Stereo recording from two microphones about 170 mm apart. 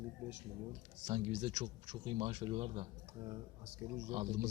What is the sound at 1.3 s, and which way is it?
Speech, 40° right (ahead or behind).